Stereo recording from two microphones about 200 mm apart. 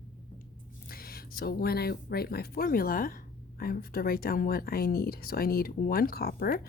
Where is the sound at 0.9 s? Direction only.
50° left (ahead or behind).